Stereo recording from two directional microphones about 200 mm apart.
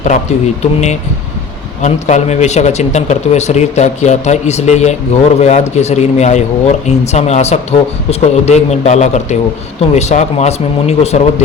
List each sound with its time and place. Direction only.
0.0 s a man's voice: 35° left (ahead or behind)